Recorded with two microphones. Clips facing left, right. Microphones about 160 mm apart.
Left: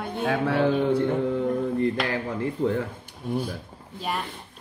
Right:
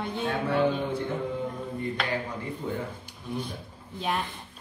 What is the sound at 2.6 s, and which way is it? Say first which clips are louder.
Speech: left 9 dB; 90° left.